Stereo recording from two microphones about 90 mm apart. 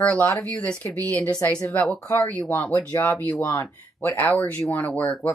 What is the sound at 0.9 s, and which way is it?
Speech, 40° right (ahead or behind).